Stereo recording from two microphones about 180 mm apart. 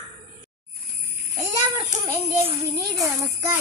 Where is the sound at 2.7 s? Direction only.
20° right (ahead or behind).